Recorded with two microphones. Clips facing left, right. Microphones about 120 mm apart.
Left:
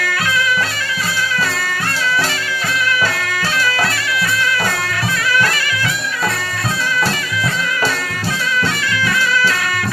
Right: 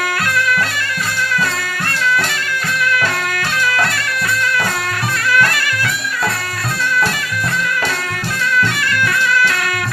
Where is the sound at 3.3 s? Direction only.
55° right (ahead or behind).